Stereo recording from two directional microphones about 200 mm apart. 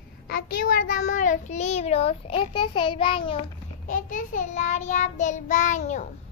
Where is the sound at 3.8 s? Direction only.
40° left (ahead or behind).